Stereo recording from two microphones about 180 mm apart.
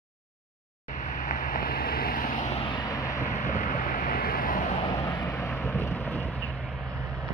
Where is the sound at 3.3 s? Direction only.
45° left (ahead or behind).